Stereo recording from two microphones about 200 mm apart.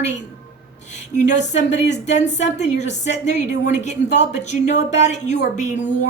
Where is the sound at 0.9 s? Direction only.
35° left (ahead or behind).